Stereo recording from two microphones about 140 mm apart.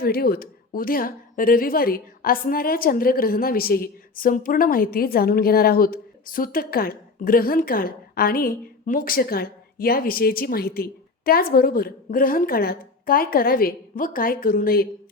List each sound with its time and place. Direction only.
0.0 s a woman's voice: 90° left